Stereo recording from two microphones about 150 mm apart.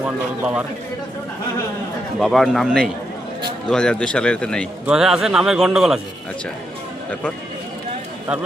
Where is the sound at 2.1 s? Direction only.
Centre (ahead or behind).